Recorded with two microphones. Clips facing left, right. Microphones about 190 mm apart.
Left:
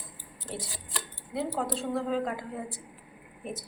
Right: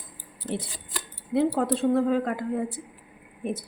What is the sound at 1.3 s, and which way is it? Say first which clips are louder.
A woman's voice: right 8 dB; 60° right (ahead or behind).